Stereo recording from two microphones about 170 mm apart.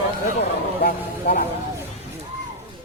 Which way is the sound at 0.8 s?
55° left (ahead or behind).